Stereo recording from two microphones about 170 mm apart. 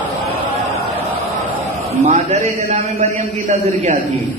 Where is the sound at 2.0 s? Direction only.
45° right (ahead or behind).